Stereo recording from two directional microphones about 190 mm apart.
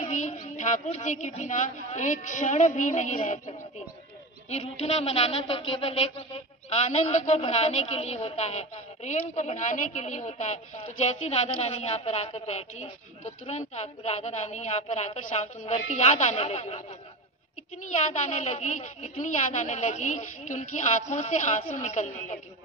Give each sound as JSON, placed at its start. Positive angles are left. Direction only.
{"t": 0.0, "sound": "a sound", "side_deg": 40}
{"t": 1.9, "sound": "a woman's voice", "side_deg": 40}
{"t": 18.3, "sound": "a woman's voice", "side_deg": 35}